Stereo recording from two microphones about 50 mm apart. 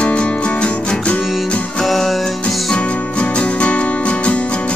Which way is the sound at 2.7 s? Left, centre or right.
Left.